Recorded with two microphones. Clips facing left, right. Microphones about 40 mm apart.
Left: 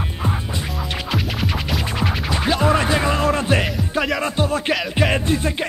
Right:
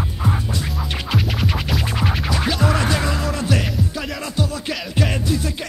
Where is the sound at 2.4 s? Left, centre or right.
Left.